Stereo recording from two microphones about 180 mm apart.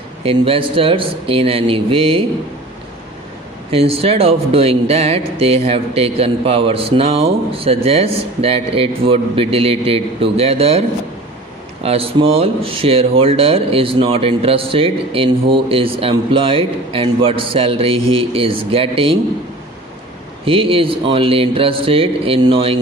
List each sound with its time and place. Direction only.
0.2 s speech: 30° right (ahead or behind)
3.7 s speech: 30° right (ahead or behind)
20.4 s speech: 30° right (ahead or behind)